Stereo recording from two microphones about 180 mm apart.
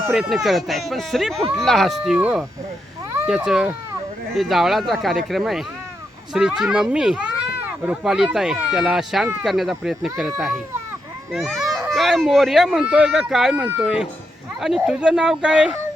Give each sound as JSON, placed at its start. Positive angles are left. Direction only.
{"t": 0.1, "sound": "speech", "side_deg": 0}